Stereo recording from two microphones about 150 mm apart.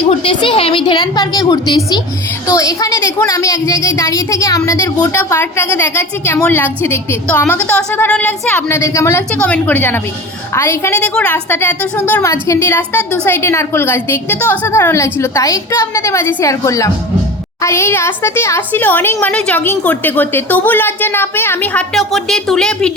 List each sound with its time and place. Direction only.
0.0 s a woman's voice: 35° left (ahead or behind); by 22.9 s 5° left (ahead or behind)